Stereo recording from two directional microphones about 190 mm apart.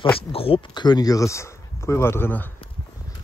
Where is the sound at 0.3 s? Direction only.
30° left (ahead or behind); by 2.5 s 10° left (ahead or behind).